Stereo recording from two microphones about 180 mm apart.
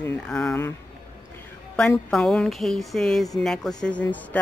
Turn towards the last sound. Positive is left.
turn(degrees=5)  # may be behind; listen again after turning